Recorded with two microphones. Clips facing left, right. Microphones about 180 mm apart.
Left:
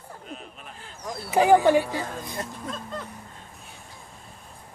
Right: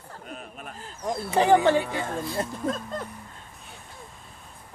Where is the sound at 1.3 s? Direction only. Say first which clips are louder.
Left 2 dB; 10° left (ahead or behind).